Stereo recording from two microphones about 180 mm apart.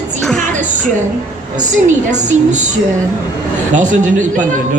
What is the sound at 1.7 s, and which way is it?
Speech, 40° right (ahead or behind).